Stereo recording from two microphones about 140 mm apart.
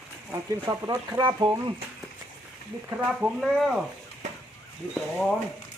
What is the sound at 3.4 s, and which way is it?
Speech, centre (ahead or behind).